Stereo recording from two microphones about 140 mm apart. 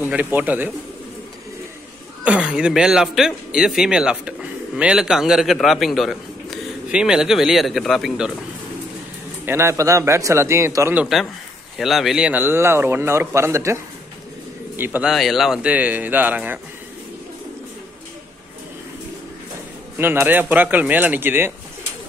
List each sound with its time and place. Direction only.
0.0 s a man's voice: 15° right (ahead or behind)
2.2 s speech: 10° right (ahead or behind)
9.5 s speech: 20° right (ahead or behind)
11.8 s a man's voice: centre (ahead or behind); by 13.7 s 20° right (ahead or behind)
14.8 s a man's voice: 15° right (ahead or behind)
15.0 s a man's voice: centre (ahead or behind)
20.0 s a man's voice: 15° right (ahead or behind)